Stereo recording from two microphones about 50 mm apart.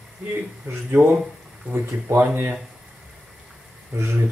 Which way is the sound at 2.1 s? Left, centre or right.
Right.